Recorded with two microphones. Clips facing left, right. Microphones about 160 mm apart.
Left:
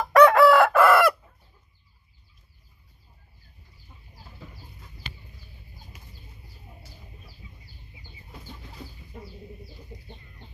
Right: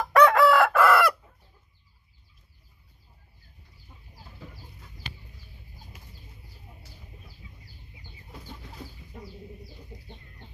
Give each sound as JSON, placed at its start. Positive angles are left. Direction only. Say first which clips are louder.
{"t": 0.1, "sound": "chicken", "louder": "left 3 dB", "side_deg": 30}